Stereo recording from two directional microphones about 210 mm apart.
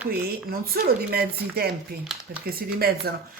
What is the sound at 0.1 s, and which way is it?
Speech, 45° right (ahead or behind).